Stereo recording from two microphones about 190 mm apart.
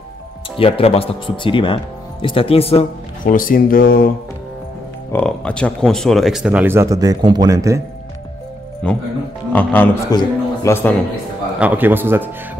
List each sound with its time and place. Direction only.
0.6 s speech: 30° left (ahead or behind)
3.3 s speech: 45° left (ahead or behind)
5.1 s speech: 5° left (ahead or behind); by 7.8 s 15° right (ahead or behind)
8.8 s a man's voice: 5° left (ahead or behind)
11.6 s speech: 10° right (ahead or behind)